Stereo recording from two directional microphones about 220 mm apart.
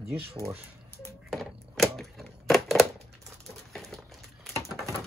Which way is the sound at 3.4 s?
Centre (ahead or behind).